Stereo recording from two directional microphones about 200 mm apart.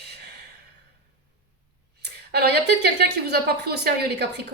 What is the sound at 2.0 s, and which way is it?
A woman's voice, 55° right (ahead or behind).